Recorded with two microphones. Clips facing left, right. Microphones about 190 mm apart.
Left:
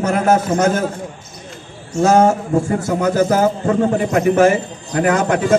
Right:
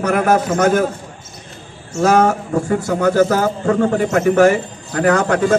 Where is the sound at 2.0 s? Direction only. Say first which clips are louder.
Left 1 dB; 25° left (ahead or behind).